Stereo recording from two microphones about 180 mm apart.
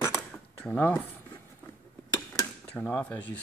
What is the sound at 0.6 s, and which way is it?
Speech, 10° left (ahead or behind).